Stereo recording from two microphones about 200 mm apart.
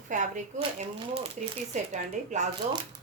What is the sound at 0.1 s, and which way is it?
A woman's voice, 40° right (ahead or behind).